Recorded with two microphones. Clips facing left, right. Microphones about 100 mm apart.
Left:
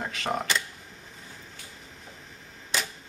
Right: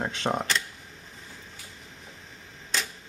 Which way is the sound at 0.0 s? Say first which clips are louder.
Right 2 dB; 30° right (ahead or behind).